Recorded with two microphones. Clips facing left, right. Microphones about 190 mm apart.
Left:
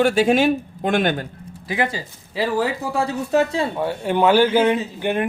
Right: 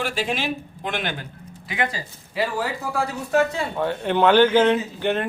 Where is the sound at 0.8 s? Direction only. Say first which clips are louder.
Left 9 dB; 45° left (ahead or behind).